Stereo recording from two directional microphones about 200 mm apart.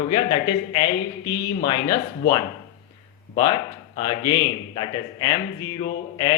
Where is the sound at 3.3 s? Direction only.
20° left (ahead or behind).